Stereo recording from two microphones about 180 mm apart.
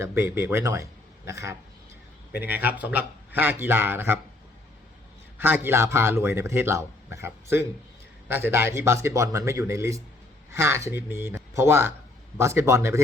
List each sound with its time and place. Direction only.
0.0 s a man's voice: 15° right (ahead or behind)
5.4 s a man's voice: 10° right (ahead or behind)